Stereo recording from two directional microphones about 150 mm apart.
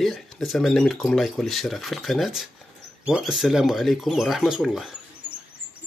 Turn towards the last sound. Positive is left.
turn(degrees=0)  # may be behind; listen again after turning